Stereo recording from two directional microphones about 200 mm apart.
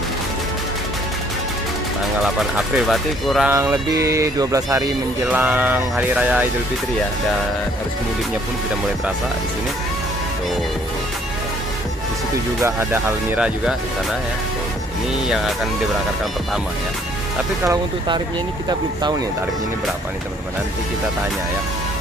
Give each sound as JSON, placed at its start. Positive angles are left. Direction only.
{"t": 2.2, "sound": "speech", "side_deg": 0}
{"t": 3.5, "sound": "speech", "side_deg": -15}
{"t": 12.6, "sound": "speech", "side_deg": -10}
{"t": 15.2, "sound": "speech", "side_deg": 0}
{"t": 17.6, "sound": "speech", "side_deg": -20}